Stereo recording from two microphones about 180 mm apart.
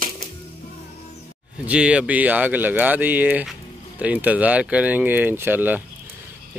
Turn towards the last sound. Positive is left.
turn(degrees=-10)  # may be behind; listen again after turning